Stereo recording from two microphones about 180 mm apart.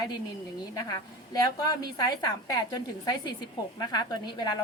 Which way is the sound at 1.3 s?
20° left (ahead or behind).